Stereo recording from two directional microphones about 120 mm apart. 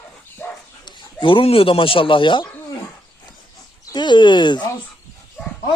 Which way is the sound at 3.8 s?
40° left (ahead or behind).